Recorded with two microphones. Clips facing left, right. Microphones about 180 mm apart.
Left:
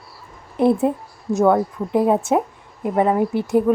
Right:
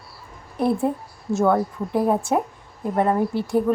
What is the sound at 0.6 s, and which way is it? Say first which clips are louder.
A woman's voice: left 4 dB; 20° left (ahead or behind).